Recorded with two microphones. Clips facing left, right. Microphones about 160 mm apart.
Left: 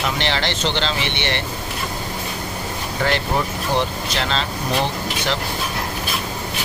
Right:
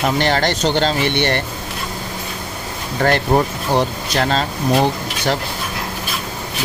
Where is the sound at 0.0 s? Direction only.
45° right (ahead or behind).